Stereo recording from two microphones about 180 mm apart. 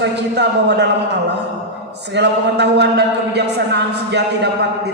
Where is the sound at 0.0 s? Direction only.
70° right (ahead or behind).